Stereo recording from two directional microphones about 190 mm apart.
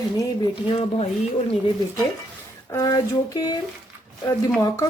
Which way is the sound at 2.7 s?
20° left (ahead or behind).